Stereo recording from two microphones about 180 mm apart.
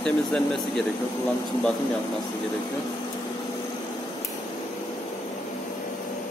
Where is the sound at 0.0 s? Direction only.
5° left (ahead or behind).